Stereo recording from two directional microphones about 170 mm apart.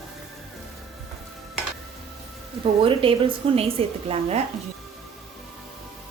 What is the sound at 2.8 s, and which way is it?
A woman's voice, 30° right (ahead or behind).